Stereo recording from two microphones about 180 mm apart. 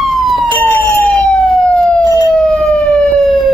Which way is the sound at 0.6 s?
15° left (ahead or behind).